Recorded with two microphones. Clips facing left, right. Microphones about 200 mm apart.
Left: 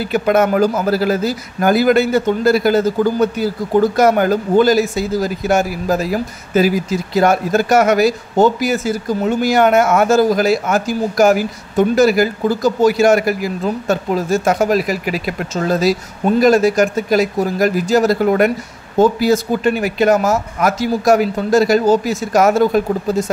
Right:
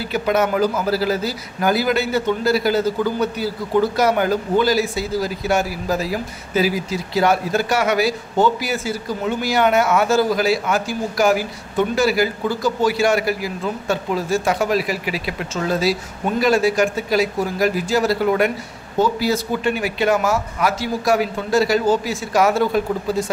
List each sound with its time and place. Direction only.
0.1 s speech: 50° left (ahead or behind)